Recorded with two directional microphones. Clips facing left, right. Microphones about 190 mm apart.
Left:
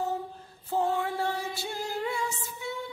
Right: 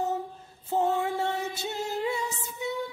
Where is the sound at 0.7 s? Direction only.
20° right (ahead or behind).